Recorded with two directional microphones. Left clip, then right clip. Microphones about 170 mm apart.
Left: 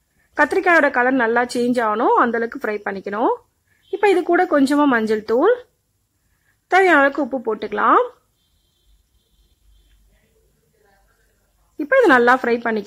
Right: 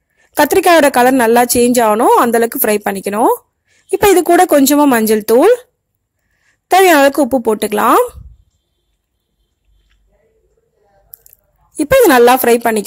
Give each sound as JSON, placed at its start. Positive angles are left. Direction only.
{"t": 0.4, "sound": "a woman's voice", "side_deg": -35}
{"t": 6.7, "sound": "a woman's voice", "side_deg": -35}
{"t": 11.7, "sound": "a woman's voice", "side_deg": -35}